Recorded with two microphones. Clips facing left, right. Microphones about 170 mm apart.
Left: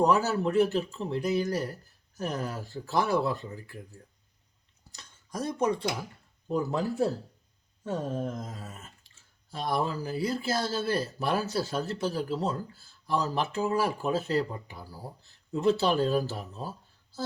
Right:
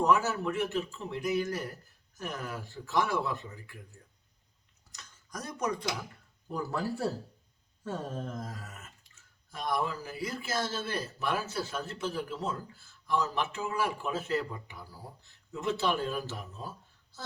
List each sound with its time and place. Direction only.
0.0 s speech: 35° left (ahead or behind)
4.9 s a sound: 30° left (ahead or behind)
6.5 s speech: 20° left (ahead or behind)